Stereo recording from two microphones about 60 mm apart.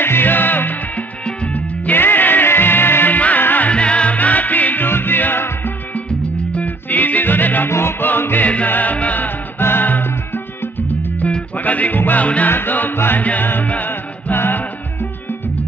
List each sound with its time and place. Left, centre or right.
0.0 s music: left
3.7 s music: centre; by 5.7 s left
6.5 s music: left
11.1 s music: left